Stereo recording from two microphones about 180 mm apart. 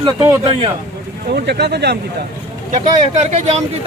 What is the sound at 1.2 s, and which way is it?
Speech, 60° right (ahead or behind).